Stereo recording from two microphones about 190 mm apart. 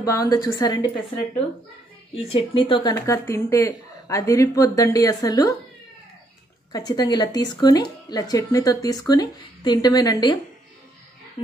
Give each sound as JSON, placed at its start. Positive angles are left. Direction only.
{"t": 0.0, "sound": "speech", "side_deg": 20}
{"t": 2.1, "sound": "speech", "side_deg": 30}
{"t": 6.7, "sound": "speech", "side_deg": 20}